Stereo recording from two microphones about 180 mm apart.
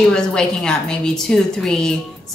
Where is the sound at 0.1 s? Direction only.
5° left (ahead or behind).